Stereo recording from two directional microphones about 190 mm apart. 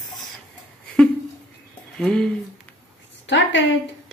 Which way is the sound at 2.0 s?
5° left (ahead or behind).